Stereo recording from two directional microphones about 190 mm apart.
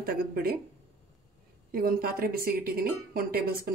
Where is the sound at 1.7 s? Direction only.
50° right (ahead or behind).